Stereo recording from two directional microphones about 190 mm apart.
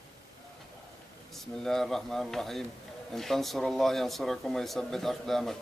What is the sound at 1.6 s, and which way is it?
Speech, centre (ahead or behind).